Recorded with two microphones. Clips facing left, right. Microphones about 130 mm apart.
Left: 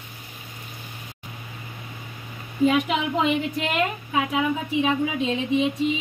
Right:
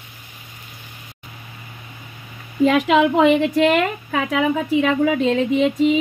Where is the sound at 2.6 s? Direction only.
90° right; by 5.7 s 70° right (ahead or behind).